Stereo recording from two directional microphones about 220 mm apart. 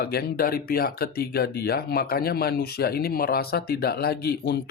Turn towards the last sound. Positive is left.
turn(degrees=50)  # may be behind; listen again after turning